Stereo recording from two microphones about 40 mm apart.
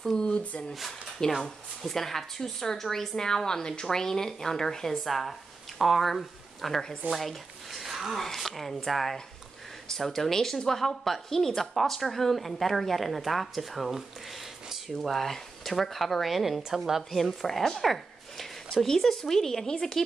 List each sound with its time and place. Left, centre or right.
0.4 s speech: left
1.2 s speech: centre
1.8 s a woman's voice: centre
17.1 s speech: centre